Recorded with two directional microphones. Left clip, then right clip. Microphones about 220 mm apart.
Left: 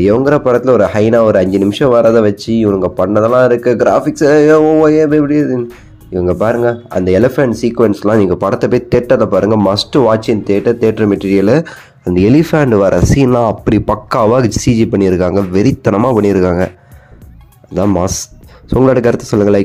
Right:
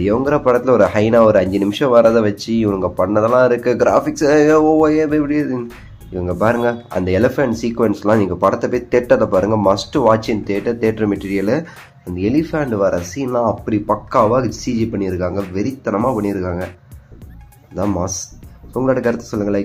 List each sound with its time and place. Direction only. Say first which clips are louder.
0.0 s speech: left 5 dB; 25° left (ahead or behind)
12.1 s speech: left 8 dB; 40° left (ahead or behind)
17.9 s speech: left 7 dB; 40° left (ahead or behind)